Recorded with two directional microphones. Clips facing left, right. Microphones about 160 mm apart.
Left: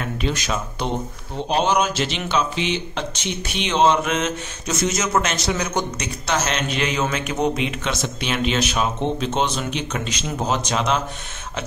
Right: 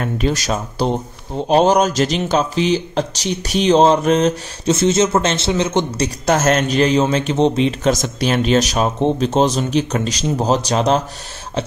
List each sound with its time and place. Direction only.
0.0 s speech: 40° right (ahead or behind); by 6.0 s 25° right (ahead or behind)
6.0 s speech: 45° right (ahead or behind)